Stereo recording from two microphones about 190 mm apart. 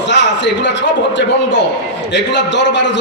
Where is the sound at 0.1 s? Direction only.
70° left (ahead or behind).